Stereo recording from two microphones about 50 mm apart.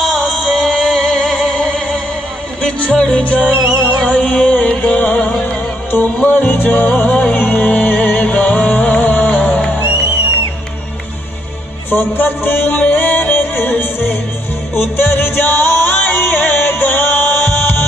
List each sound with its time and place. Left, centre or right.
0.0 s music: centre; by 3.4 s left
3.4 s music: centre
4.0 s music: left
6.2 s music: left
11.9 s music: left